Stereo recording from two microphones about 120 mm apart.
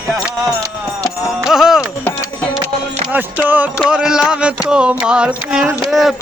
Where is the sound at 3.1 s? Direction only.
15° right (ahead or behind).